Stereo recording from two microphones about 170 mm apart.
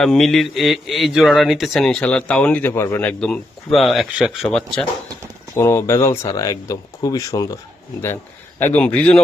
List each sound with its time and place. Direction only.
0.0 s speech: centre (ahead or behind)
5.5 s a man's voice: 15° left (ahead or behind)